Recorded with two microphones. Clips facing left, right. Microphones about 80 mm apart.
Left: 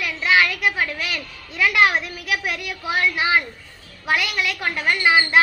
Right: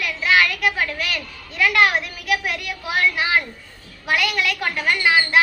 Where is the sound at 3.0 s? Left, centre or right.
Centre.